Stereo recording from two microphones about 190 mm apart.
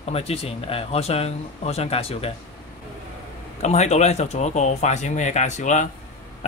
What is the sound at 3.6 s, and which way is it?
A man's voice, 35° left (ahead or behind).